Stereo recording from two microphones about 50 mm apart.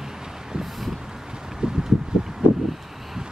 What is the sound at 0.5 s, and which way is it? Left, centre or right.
Vehicle, centre.